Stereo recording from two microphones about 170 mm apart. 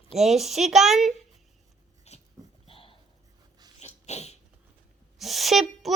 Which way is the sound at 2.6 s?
30° left (ahead or behind).